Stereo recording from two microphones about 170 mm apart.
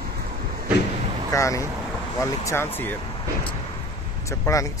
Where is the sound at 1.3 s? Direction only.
20° left (ahead or behind).